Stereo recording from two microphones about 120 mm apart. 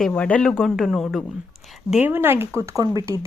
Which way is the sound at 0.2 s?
10° left (ahead or behind).